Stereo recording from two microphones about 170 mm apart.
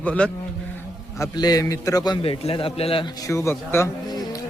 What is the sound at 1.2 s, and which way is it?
A man's voice, 20° left (ahead or behind).